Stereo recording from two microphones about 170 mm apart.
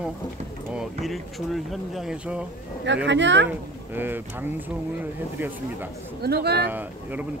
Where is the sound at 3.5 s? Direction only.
10° right (ahead or behind).